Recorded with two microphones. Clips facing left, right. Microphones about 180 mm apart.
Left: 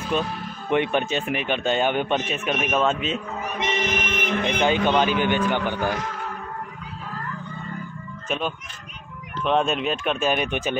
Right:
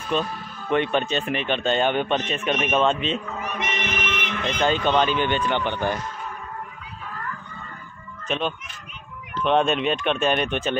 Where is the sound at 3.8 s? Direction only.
40° left (ahead or behind).